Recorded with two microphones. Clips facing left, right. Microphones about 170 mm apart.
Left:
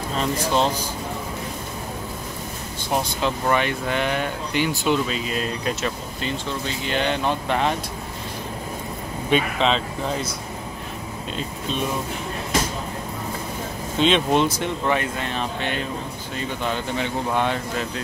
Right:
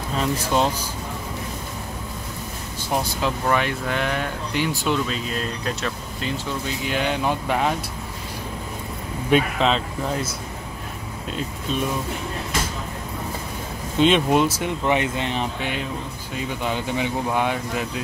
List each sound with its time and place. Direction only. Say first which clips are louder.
0.2 s speech: even; 5° right (ahead or behind)
3.2 s speech: left 1 dB; centre (ahead or behind)
6.9 s speech: left 1 dB; 10° right (ahead or behind)
9.3 s speech: right 1 dB; 5° right (ahead or behind)
13.9 s speech: right 1 dB; 10° right (ahead or behind)
14.9 s speech: right 3 dB; 20° right (ahead or behind)